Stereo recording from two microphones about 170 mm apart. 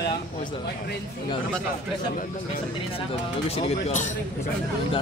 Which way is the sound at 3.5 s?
45° left (ahead or behind).